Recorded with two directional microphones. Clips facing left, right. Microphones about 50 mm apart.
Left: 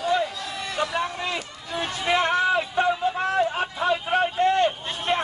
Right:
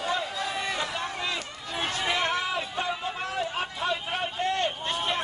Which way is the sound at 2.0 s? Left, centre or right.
Left.